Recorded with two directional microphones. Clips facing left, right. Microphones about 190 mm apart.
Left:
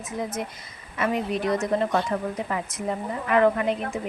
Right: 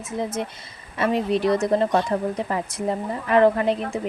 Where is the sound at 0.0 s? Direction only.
25° right (ahead or behind).